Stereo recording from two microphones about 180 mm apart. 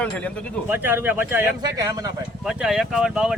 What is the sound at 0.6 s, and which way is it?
Speech, 10° right (ahead or behind).